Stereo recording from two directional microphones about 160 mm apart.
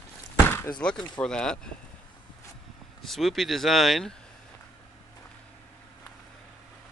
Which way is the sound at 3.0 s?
Centre (ahead or behind).